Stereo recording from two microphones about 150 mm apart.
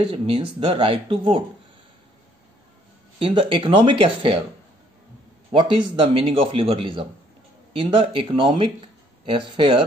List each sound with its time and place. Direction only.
0.0 s a man's voice: 40° right (ahead or behind)
3.2 s a man's voice: 35° right (ahead or behind)
5.5 s a man's voice: 35° right (ahead or behind)